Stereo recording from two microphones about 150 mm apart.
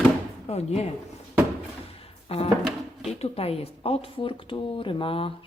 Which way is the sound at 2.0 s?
40° left (ahead or behind).